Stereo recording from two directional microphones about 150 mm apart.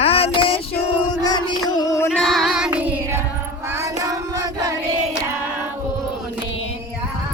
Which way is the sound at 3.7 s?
20° right (ahead or behind).